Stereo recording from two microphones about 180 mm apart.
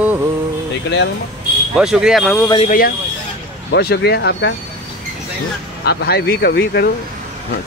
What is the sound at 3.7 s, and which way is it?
Speech, 65° left (ahead or behind).